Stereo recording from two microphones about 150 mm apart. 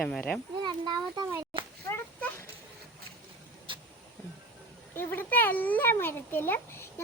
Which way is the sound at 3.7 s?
35° right (ahead or behind).